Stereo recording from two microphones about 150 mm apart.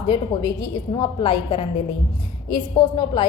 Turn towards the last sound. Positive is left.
turn(degrees=30)  # may be behind; listen again after turning